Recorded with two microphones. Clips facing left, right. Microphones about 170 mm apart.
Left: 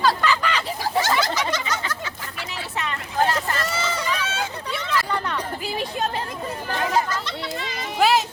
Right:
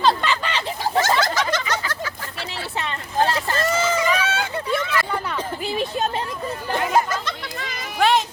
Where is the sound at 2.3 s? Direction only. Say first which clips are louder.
Right 1 dB; 30° right (ahead or behind).